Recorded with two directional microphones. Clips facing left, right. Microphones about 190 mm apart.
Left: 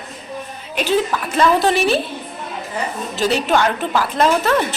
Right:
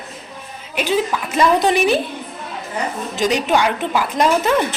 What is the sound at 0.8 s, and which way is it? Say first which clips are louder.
A woman's voice: left 1 dB; 10° right (ahead or behind).